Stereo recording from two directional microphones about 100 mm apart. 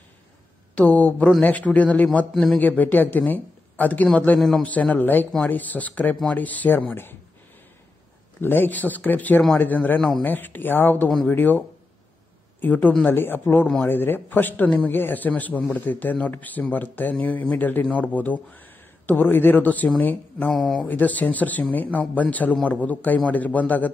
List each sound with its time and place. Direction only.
0.7 s a man's voice: 15° left (ahead or behind)
2.6 s speech: 15° left (ahead or behind)
4.4 s a man's voice: centre (ahead or behind)
4.6 s speech: 15° left (ahead or behind)
8.4 s speech: 20° left (ahead or behind)
20.5 s a man's voice: 5° left (ahead or behind)
20.8 s speech: 15° left (ahead or behind)